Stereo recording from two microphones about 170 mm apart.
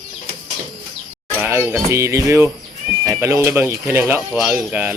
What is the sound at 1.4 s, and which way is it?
Speech, 15° right (ahead or behind).